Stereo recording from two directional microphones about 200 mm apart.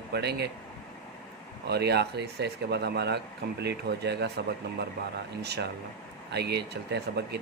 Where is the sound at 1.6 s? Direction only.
55° right (ahead or behind).